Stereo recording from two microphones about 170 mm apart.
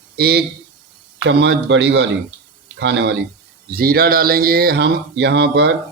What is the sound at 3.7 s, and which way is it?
A man's voice, 60° right (ahead or behind).